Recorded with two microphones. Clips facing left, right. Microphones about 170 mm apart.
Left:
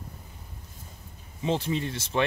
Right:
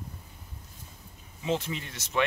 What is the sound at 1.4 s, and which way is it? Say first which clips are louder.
Speech: left 3 dB; 30° left (ahead or behind).